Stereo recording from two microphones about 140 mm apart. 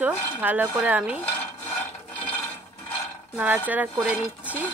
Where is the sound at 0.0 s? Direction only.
10° right (ahead or behind).